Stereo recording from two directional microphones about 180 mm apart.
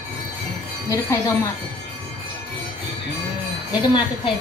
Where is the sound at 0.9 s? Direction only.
15° left (ahead or behind).